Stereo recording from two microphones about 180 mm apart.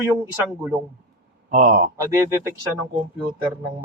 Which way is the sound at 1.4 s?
40° right (ahead or behind).